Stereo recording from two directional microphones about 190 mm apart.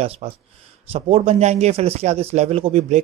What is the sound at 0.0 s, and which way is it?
Speech, 30° right (ahead or behind).